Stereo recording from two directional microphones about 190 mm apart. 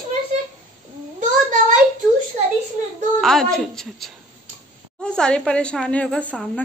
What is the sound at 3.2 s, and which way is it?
A woman's voice, centre (ahead or behind).